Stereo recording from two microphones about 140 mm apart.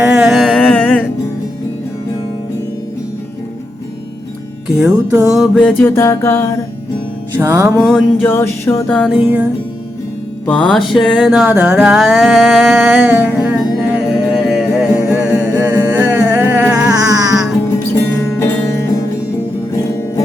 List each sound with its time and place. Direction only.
0.0 s music: 10° right (ahead or behind); by 1.0 s 10° left (ahead or behind)
4.8 s music: 5° right (ahead or behind)
5.8 s music: 20° left (ahead or behind)
7.3 s music: 15° right (ahead or behind)
7.8 s music: 5° left (ahead or behind)
8.2 s music: 15° left (ahead or behind)
8.9 s music: 10° left (ahead or behind)
9.1 s music: 10° right (ahead or behind)
10.4 s music: 10° left (ahead or behind); by 16.9 s 10° right (ahead or behind)
17.1 s music: 25° right (ahead or behind)
18.2 s music: 15° left (ahead or behind)